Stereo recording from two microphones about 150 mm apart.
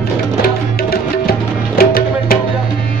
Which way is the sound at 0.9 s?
85° left.